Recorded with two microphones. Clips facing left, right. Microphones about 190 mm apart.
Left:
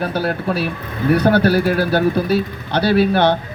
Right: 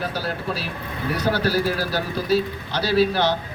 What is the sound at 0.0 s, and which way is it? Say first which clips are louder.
Speech: left 7 dB; 60° left (ahead or behind).